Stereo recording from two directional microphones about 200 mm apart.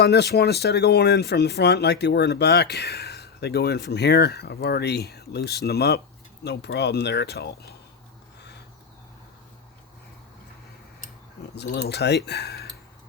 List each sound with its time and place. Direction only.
0.0 s speech: 55° left (ahead or behind)
11.5 s speech: 55° left (ahead or behind)